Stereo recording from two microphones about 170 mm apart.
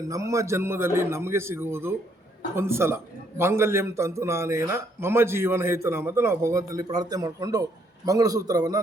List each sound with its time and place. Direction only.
0.1 s a man's voice: 20° right (ahead or behind)